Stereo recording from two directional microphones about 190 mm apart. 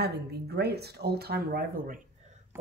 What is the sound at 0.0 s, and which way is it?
Speech, 60° right (ahead or behind).